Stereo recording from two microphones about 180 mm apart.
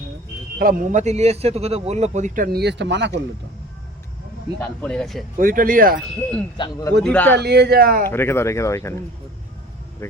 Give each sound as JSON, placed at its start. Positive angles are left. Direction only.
{"t": 0.6, "sound": "a man's voice", "side_deg": -50}
{"t": 4.6, "sound": "speech", "side_deg": 5}
{"t": 5.4, "sound": "a man's voice", "side_deg": -50}
{"t": 6.6, "sound": "a man's voice", "side_deg": 20}
{"t": 7.0, "sound": "speech", "side_deg": 10}
{"t": 7.3, "sound": "speech", "side_deg": -65}
{"t": 8.0, "sound": "speech", "side_deg": 15}
{"t": 10.0, "sound": "speech", "side_deg": 15}